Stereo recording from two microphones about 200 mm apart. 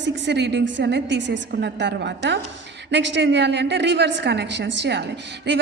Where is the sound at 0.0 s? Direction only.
60° right (ahead or behind).